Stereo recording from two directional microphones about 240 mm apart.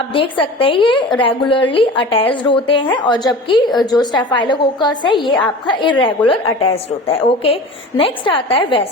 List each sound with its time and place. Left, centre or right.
0.1 s a woman's voice: left